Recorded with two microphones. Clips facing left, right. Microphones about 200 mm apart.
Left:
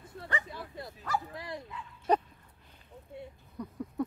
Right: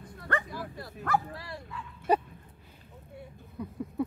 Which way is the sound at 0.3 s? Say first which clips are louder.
Right 5 dB; 60° right (ahead or behind).